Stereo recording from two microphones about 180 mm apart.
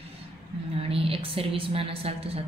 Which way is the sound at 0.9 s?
30° right (ahead or behind).